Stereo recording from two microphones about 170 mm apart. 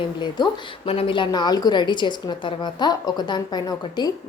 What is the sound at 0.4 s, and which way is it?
A woman's voice, 25° left (ahead or behind).